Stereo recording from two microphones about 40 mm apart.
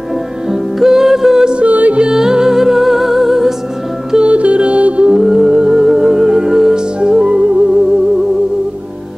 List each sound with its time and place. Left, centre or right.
0.5 s music: centre
1.6 s music: right
2.0 s music: centre
4.2 s music: right
5.1 s music: centre
5.5 s music: centre